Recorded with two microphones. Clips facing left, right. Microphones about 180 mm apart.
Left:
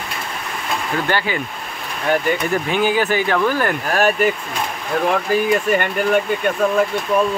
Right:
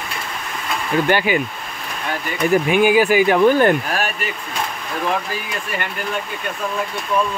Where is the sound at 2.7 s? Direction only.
10° right (ahead or behind).